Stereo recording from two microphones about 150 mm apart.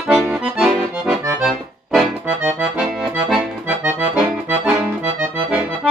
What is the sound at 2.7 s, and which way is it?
Accordion, centre (ahead or behind).